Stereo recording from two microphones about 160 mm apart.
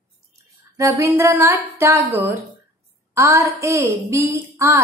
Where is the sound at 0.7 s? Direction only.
15° right (ahead or behind).